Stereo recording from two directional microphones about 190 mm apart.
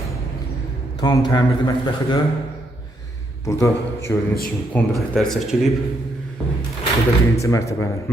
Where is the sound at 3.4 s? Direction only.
15° left (ahead or behind).